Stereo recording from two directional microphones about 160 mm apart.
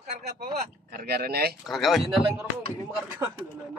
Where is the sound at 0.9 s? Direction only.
75° right (ahead or behind).